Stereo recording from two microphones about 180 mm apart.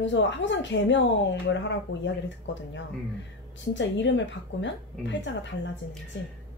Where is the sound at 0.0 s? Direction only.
90° left.